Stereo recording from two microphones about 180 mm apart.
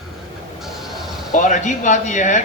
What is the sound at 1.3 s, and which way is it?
Speech, 45° left (ahead or behind).